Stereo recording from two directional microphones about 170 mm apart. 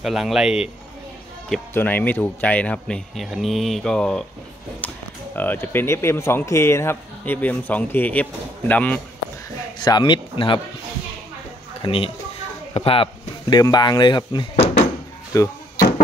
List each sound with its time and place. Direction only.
0.0 s speech: centre (ahead or behind)
1.7 s speech: 10° left (ahead or behind)
9.8 s speech: 25° left (ahead or behind)
11.8 s speech: 30° left (ahead or behind)
14.5 s a sound: 45° left (ahead or behind)
15.3 s speech: 20° left (ahead or behind)